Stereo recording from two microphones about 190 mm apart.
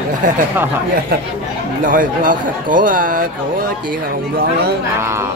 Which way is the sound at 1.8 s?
45° right (ahead or behind).